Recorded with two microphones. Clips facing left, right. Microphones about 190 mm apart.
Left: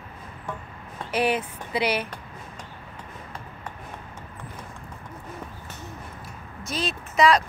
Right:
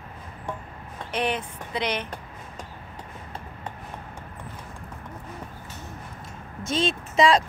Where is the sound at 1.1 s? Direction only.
5° left (ahead or behind).